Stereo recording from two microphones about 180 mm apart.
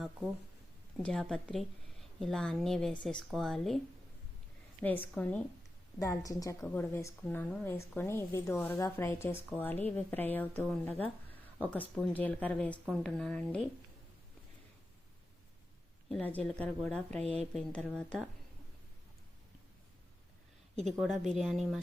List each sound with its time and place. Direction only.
0.9 s speech: 5° left (ahead or behind)
4.8 s a woman's voice: 10° left (ahead or behind)
16.0 s speech: 5° left (ahead or behind)
17.2 s speech: 35° right (ahead or behind)
17.5 s speech: 5° left (ahead or behind)
21.0 s speech: centre (ahead or behind)